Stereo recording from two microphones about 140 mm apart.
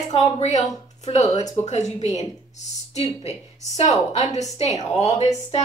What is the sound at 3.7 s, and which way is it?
A woman's voice, 50° left (ahead or behind).